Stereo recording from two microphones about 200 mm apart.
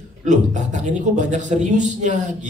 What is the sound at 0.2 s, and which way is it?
A man's voice, 35° right (ahead or behind).